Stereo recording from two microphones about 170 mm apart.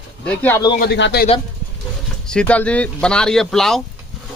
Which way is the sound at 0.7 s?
80° left.